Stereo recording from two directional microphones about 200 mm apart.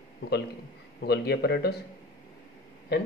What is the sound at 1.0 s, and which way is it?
Speech, 55° left (ahead or behind).